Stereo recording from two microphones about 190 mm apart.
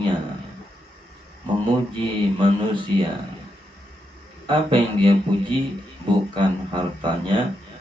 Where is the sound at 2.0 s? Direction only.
25° right (ahead or behind).